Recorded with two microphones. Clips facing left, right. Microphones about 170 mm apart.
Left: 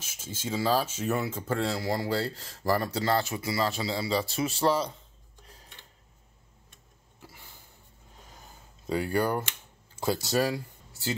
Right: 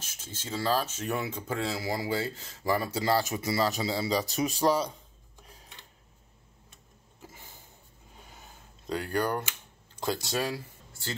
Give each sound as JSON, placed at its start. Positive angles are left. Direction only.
{"t": 0.0, "sound": "speech", "side_deg": 10}
{"t": 3.0, "sound": "a man's voice", "side_deg": -15}
{"t": 7.2, "sound": "a sound", "side_deg": -20}
{"t": 8.8, "sound": "speech", "side_deg": 10}